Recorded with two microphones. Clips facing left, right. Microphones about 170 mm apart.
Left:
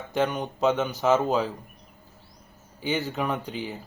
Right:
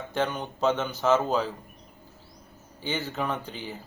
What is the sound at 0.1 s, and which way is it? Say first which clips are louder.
Speech: left 3 dB; 10° left (ahead or behind).